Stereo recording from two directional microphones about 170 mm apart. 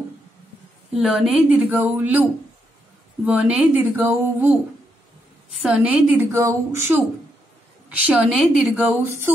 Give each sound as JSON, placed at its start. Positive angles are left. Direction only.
{"t": 1.0, "sound": "speech", "side_deg": 0}
{"t": 3.3, "sound": "speech", "side_deg": -10}